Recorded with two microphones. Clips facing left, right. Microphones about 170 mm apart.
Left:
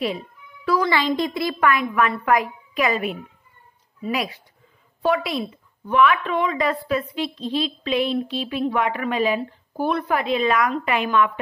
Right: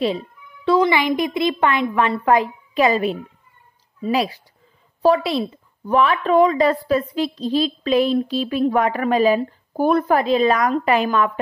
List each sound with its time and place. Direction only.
0.7 s a woman's voice: 20° right (ahead or behind); by 11.3 s 40° right (ahead or behind)